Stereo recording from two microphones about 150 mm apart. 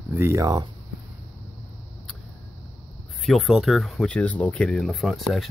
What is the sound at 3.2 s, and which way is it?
Speech, centre (ahead or behind).